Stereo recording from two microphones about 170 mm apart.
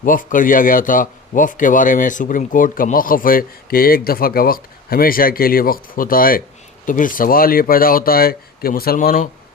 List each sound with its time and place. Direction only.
0.0 s speech: 50° left (ahead or behind)